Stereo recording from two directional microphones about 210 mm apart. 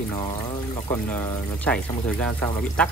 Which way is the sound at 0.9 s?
10° left (ahead or behind).